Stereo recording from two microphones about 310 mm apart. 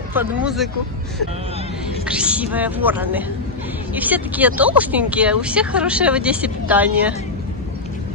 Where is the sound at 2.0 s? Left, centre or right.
Centre.